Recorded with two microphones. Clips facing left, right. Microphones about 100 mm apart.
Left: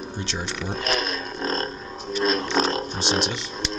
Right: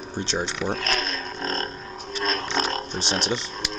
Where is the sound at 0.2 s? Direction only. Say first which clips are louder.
Right 5 dB; 30° right (ahead or behind).